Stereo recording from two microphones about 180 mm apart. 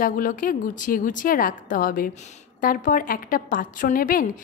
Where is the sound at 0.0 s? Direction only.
50° left (ahead or behind).